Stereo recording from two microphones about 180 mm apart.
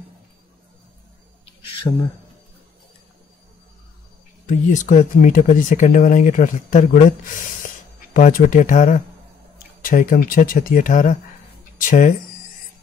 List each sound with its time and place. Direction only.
1.7 s speech: 30° left (ahead or behind)
4.5 s speech: 45° left (ahead or behind)